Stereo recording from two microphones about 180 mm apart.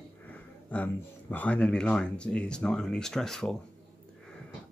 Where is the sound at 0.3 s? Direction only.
10° left (ahead or behind).